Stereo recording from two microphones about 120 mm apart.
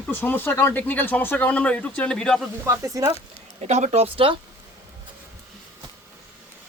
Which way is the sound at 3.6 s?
70° right (ahead or behind).